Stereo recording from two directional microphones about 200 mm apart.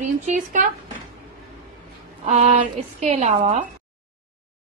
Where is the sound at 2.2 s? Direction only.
35° right (ahead or behind).